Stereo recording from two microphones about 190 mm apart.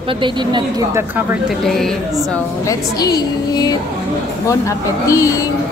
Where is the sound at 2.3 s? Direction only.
15° left (ahead or behind).